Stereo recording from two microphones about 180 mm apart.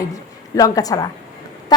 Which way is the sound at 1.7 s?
25° left (ahead or behind).